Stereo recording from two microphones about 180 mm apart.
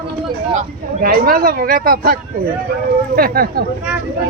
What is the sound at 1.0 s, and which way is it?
Speech, 55° right (ahead or behind).